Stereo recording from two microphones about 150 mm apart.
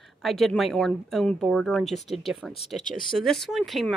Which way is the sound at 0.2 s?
Centre (ahead or behind).